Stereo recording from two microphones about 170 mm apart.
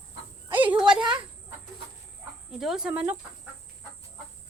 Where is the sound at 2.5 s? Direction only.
Centre (ahead or behind).